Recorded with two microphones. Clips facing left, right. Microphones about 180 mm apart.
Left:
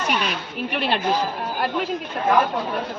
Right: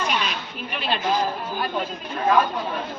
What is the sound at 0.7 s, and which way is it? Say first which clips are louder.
Speech: left 3 dB; 65° left (ahead or behind).